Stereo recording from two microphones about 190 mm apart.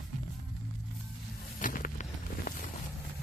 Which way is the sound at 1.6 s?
45° left (ahead or behind).